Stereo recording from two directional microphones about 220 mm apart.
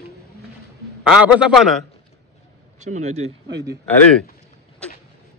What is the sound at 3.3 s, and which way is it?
Speech, 55° right (ahead or behind).